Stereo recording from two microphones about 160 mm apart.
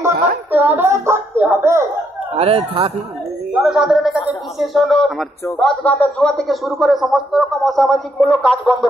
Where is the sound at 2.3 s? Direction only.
40° right (ahead or behind).